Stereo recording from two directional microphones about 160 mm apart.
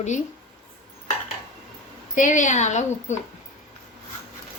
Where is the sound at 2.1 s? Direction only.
50° left (ahead or behind).